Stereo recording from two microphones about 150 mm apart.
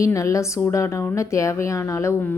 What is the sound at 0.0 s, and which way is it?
A woman's voice, 20° left (ahead or behind).